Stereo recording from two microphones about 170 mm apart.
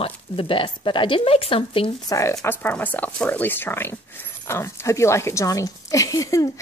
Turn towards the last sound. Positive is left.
turn(degrees=20)  # may be behind; listen again after turning